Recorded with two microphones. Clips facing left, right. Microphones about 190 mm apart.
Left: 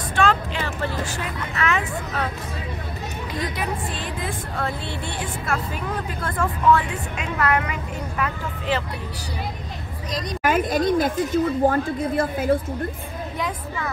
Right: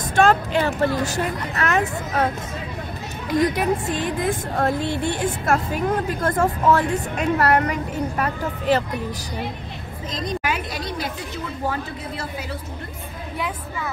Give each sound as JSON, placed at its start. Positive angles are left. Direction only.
{"t": 0.1, "sound": "speech", "side_deg": -45}
{"t": 4.6, "sound": "a woman's voice", "side_deg": -45}
{"t": 10.4, "sound": "speech", "side_deg": 45}